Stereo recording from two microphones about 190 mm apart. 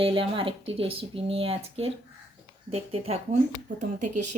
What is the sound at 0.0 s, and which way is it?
Speech, 30° right (ahead or behind).